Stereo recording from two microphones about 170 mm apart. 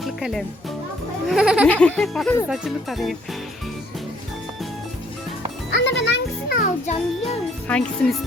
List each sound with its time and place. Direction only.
0.0 s music: centre (ahead or behind)
1.3 s speech: 5° right (ahead or behind)
5.7 s music: 90° left
7.7 s speech: 5° left (ahead or behind)